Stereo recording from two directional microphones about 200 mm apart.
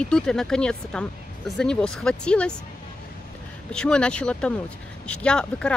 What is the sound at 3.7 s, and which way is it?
Speech, 5° left (ahead or behind).